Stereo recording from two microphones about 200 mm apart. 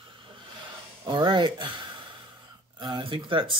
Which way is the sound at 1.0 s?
25° right (ahead or behind).